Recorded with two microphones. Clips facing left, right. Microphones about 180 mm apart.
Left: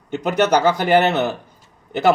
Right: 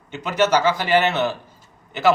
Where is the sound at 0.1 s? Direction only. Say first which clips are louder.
Left 2 dB; 40° left (ahead or behind).